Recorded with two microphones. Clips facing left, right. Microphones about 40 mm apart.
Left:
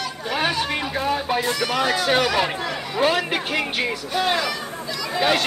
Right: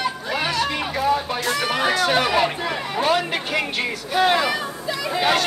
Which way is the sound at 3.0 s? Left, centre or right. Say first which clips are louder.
Left 1 dB; centre.